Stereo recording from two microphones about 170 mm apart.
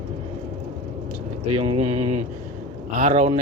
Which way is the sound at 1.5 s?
35° right (ahead or behind).